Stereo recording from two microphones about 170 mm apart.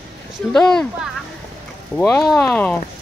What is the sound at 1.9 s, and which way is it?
Speech, centre (ahead or behind).